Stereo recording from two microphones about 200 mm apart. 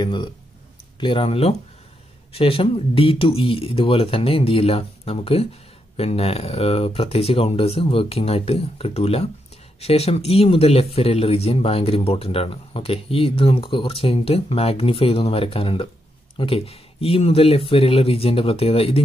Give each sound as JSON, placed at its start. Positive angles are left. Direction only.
{"t": 0.0, "sound": "speech", "side_deg": 25}